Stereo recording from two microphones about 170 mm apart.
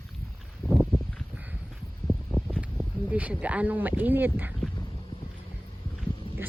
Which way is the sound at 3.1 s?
10° right (ahead or behind).